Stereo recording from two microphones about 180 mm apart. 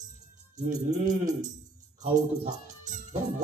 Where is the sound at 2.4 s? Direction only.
40° right (ahead or behind).